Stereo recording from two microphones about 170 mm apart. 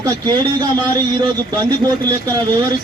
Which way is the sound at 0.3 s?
25° right (ahead or behind).